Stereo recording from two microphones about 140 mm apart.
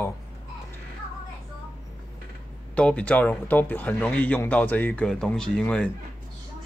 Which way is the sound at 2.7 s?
10° left (ahead or behind).